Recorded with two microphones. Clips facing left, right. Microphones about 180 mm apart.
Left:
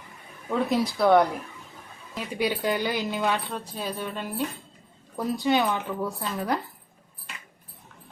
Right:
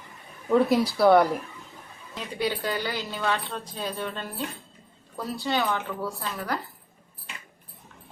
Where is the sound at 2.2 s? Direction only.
15° left (ahead or behind).